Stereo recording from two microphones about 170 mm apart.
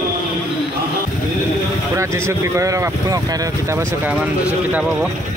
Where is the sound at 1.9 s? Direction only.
15° right (ahead or behind).